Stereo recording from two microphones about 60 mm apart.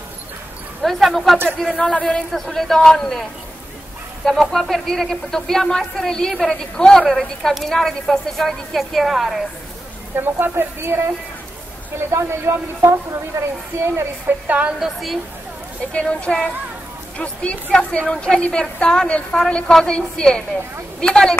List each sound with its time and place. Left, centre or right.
0.8 s a woman's voice: centre
10.1 s speech: right
12.1 s speech: right
14.2 s a woman's voice: right
14.8 s a woman's voice: centre
15.9 s speech: centre